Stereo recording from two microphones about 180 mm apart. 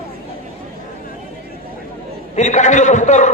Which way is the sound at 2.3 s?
40° left (ahead or behind).